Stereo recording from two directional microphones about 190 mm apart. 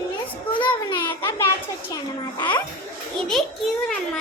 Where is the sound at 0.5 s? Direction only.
25° left (ahead or behind).